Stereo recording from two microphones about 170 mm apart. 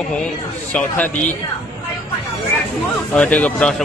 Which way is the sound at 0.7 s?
10° left (ahead or behind).